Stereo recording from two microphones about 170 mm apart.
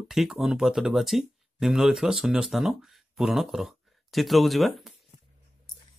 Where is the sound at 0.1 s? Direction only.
Centre (ahead or behind).